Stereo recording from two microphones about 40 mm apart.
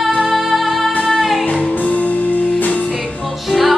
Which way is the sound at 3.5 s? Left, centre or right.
Centre.